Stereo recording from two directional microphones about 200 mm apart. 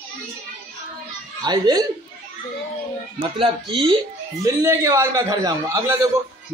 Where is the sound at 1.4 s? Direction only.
20° right (ahead or behind).